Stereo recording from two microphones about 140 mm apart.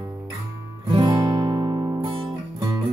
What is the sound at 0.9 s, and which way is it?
Guitar, 30° right (ahead or behind).